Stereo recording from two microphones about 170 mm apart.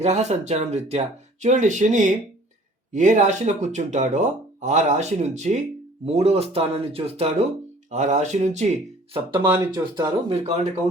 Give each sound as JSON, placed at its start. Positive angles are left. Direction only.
{"t": 0.0, "sound": "speech", "side_deg": -40}